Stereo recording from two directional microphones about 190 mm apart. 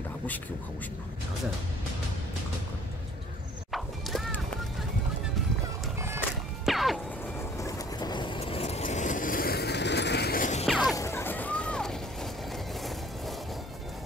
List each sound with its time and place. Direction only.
3.7 s music: centre (ahead or behind)
5.9 s music: 15° right (ahead or behind)
6.6 s music: centre (ahead or behind)
7.5 s vehicle: 20° left (ahead or behind); by 10.7 s 40° left (ahead or behind)
10.7 s music: centre (ahead or behind)
11.0 s a sound: 15° left (ahead or behind)